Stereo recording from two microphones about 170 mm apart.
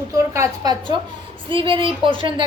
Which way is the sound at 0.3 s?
25° right (ahead or behind).